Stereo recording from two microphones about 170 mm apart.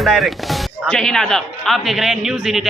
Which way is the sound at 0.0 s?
Centre (ahead or behind).